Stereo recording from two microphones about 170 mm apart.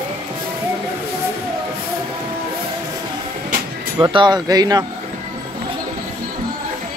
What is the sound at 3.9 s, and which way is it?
Speech, 25° right (ahead or behind).